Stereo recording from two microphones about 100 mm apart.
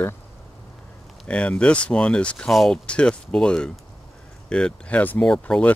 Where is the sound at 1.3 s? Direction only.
10° left (ahead or behind).